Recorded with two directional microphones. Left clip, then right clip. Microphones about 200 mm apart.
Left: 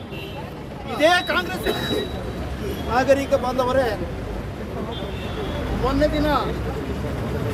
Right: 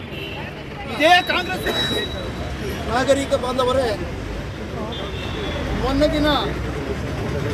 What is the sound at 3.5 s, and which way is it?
Speech, 10° left (ahead or behind).